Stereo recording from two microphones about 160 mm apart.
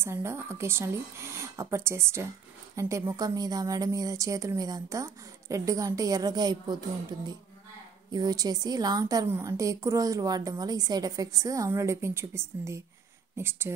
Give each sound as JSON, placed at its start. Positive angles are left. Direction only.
{"t": 0.0, "sound": "a woman's voice", "side_deg": -15}